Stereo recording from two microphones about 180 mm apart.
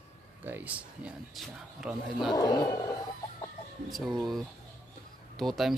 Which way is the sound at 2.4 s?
20° left (ahead or behind).